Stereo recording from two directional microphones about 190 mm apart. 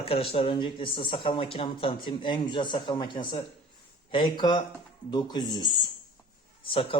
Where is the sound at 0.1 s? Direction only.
30° left (ahead or behind).